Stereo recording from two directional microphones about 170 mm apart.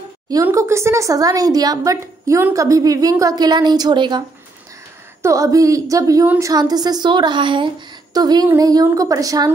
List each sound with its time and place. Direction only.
0.3 s speech: 15° right (ahead or behind)
5.2 s speech: 20° right (ahead or behind)